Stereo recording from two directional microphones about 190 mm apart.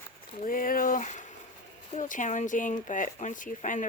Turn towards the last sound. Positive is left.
turn(degrees=40)  # may be behind; listen again after turning